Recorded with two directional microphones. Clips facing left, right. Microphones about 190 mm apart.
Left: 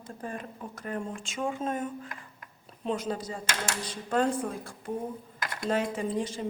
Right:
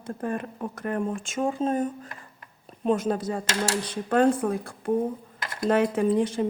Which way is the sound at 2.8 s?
50° right (ahead or behind).